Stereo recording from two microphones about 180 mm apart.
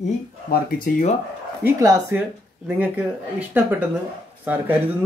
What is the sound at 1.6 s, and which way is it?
Speech, 15° right (ahead or behind).